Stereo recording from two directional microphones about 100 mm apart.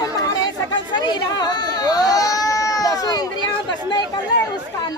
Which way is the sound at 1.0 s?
45° left (ahead or behind).